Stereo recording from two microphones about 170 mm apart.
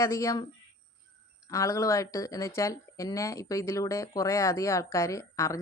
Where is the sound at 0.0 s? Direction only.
15° left (ahead or behind).